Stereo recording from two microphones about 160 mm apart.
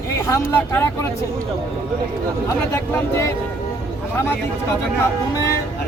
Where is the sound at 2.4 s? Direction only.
15° left (ahead or behind).